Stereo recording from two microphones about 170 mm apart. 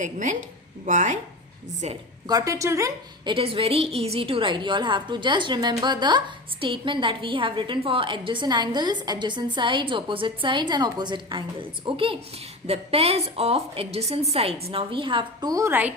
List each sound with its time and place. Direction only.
0.0 s a woman's voice: 45° right (ahead or behind)
2.2 s a woman's voice: 20° right (ahead or behind)
3.3 s a woman's voice: 35° right (ahead or behind); by 15.9 s 15° right (ahead or behind)